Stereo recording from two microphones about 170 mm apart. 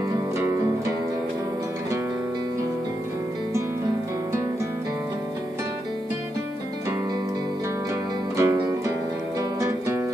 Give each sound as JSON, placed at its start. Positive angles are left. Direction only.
{"t": 0.4, "sound": "music", "side_deg": -15}
{"t": 8.4, "sound": "music", "side_deg": -20}